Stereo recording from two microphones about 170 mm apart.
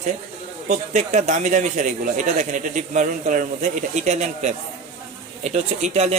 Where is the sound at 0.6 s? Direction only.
45° right (ahead or behind).